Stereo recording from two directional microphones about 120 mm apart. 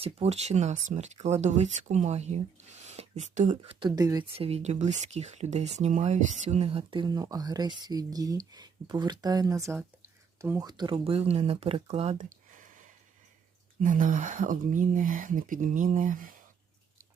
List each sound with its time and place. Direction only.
0.0 s speech: 60° right (ahead or behind)
3.3 s speech: 90° right
3.7 s speech: 40° right (ahead or behind)
4.4 s speech: 60° right (ahead or behind)
6.9 s speech: 35° right (ahead or behind)
10.6 s speech: 35° right (ahead or behind); by 12.2 s 65° right (ahead or behind)
13.9 s speech: 90° right